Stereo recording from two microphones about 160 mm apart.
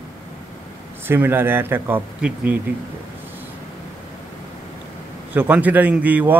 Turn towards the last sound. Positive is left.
turn(degrees=-10)  # may be behind; listen again after turning